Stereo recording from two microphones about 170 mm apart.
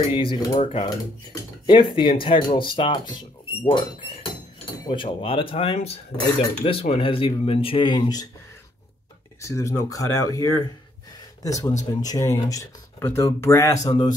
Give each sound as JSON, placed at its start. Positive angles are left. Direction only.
{"t": 0.1, "sound": "speech", "side_deg": 30}
{"t": 9.4, "sound": "speech", "side_deg": 20}